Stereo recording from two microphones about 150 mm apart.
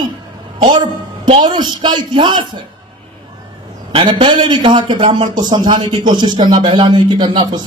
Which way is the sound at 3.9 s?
35° right (ahead or behind).